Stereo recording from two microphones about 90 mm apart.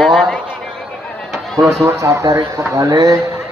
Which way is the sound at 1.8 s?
30° right (ahead or behind).